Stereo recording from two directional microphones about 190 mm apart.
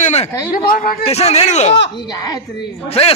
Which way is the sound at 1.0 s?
35° left (ahead or behind).